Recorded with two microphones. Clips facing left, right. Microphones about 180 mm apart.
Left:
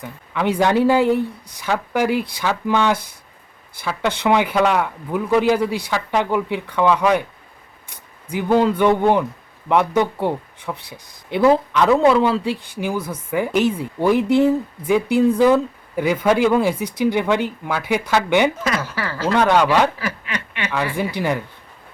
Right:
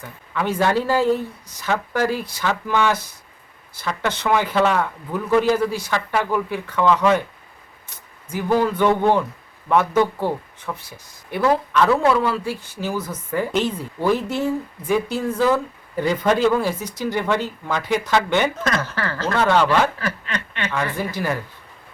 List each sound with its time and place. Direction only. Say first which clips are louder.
0.3 s a woman's voice: left 3 dB; 15° left (ahead or behind)
8.4 s a woman's voice: left 2 dB; 20° left (ahead or behind)